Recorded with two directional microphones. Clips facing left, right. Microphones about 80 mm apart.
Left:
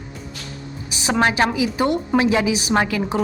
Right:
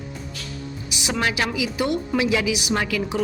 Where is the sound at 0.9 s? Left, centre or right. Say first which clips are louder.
Left 6 dB; left.